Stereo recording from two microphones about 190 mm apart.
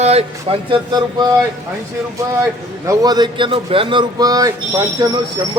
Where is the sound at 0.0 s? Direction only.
35° right (ahead or behind).